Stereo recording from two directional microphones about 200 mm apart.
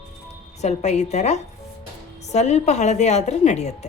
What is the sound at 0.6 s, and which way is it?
A woman's voice, 35° left (ahead or behind).